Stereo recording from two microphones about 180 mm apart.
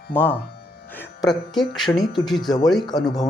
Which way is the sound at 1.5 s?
Centre (ahead or behind).